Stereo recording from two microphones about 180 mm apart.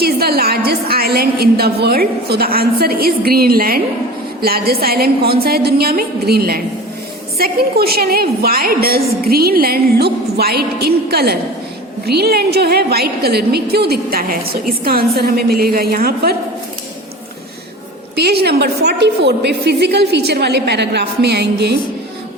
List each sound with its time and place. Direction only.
0.0 s a woman's voice: 60° right (ahead or behind)
18.2 s a woman's voice: 65° right (ahead or behind)